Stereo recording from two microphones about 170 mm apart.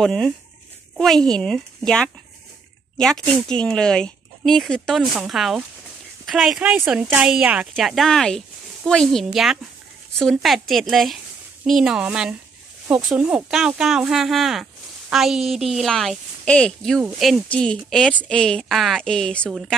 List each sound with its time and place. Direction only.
0.0 s speech: 5° left (ahead or behind)